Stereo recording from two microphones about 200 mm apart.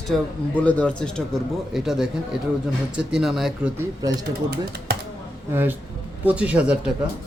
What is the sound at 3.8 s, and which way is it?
Speech, 15° right (ahead or behind).